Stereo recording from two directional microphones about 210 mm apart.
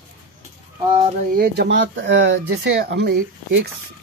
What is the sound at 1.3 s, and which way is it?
Speech, 50° right (ahead or behind).